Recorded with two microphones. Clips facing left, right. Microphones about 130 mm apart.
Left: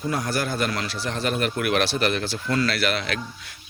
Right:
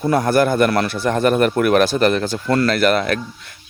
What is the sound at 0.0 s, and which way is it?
Speech, 55° right (ahead or behind).